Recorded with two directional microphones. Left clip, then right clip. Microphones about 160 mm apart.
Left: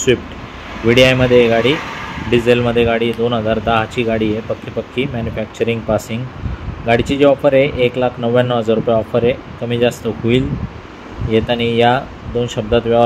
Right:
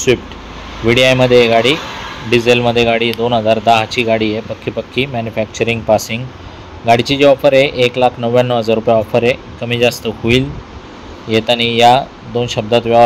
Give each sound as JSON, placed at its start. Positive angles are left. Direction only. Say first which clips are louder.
{"t": 0.8, "sound": "speech", "louder": "right 1 dB", "side_deg": -30}